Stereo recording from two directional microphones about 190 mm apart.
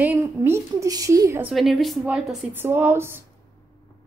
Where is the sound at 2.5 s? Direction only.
10° right (ahead or behind).